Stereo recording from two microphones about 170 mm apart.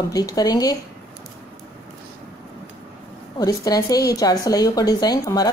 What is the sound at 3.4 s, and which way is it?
A woman's voice, 20° left (ahead or behind).